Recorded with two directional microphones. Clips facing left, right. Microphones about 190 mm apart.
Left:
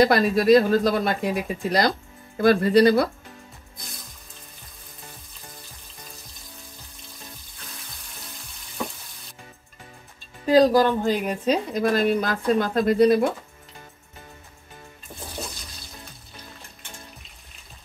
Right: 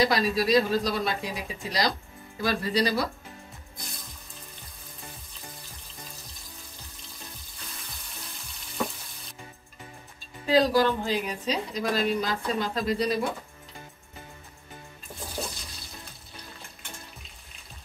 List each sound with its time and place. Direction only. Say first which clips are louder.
0.0 s speech: left 6 dB; 55° left (ahead or behind)
10.4 s speech: left 5 dB; 45° left (ahead or behind)